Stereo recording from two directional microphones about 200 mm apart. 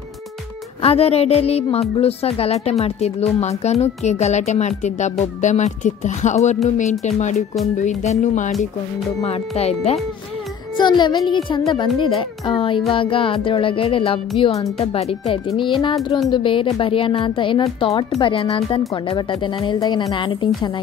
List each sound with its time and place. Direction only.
0.8 s speech: 30° left (ahead or behind)
10.8 s speech: 20° left (ahead or behind)